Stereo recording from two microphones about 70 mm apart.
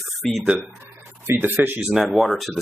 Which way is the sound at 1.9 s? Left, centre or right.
Centre.